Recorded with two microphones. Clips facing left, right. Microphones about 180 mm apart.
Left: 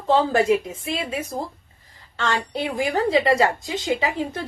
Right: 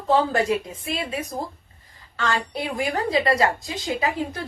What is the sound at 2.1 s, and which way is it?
A woman's voice, 25° left (ahead or behind).